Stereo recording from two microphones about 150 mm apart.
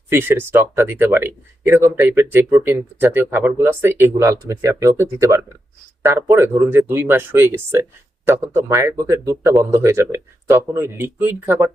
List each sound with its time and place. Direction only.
0.1 s speech: 15° right (ahead or behind)